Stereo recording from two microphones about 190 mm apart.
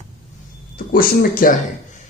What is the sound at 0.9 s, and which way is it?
Speech, 50° left (ahead or behind).